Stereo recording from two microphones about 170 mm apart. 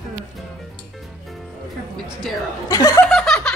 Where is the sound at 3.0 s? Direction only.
5° left (ahead or behind).